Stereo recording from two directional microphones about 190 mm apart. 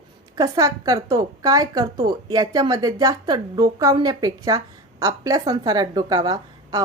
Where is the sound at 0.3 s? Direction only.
20° right (ahead or behind).